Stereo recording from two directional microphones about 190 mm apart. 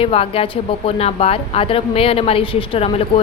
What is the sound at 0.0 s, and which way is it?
Speech, 30° left (ahead or behind).